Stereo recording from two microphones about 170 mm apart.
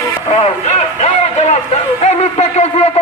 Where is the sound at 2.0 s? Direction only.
40° left (ahead or behind).